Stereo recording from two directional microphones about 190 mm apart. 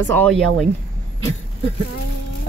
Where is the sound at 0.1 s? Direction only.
10° left (ahead or behind).